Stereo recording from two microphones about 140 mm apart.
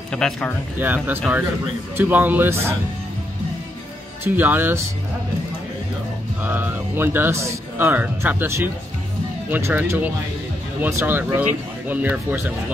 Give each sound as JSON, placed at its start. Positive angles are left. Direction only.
{"t": 0.1, "sound": "speech", "side_deg": 5}
{"t": 0.7, "sound": "speech", "side_deg": -15}
{"t": 4.2, "sound": "speech", "side_deg": -15}
{"t": 6.4, "sound": "speech", "side_deg": -15}